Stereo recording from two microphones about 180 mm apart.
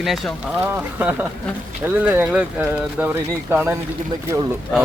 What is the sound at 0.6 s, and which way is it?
Speech, 10° right (ahead or behind).